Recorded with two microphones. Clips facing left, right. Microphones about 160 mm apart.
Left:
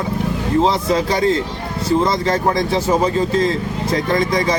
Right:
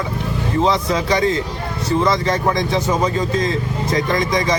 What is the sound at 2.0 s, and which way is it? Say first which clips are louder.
Speech: right 2 dB; 30° left (ahead or behind).